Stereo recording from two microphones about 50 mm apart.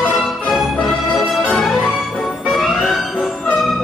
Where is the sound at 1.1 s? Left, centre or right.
Centre.